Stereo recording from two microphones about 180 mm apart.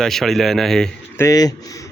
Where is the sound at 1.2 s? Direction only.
20° left (ahead or behind).